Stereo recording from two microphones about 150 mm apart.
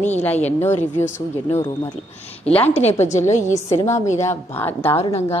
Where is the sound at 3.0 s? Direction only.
50° left (ahead or behind).